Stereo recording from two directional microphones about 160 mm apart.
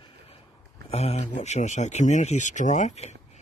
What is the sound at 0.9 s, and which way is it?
Speech, 40° left (ahead or behind).